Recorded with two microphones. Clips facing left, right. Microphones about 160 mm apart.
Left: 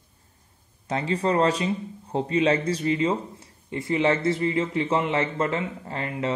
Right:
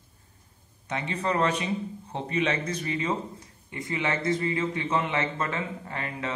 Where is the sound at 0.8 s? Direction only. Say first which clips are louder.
Left 5 dB; 35° left (ahead or behind).